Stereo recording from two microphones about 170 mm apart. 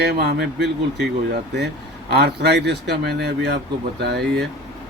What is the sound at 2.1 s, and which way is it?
Speech, 80° right.